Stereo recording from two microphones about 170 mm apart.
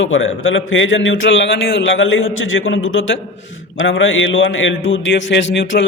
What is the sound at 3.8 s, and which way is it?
Speech, 90° left.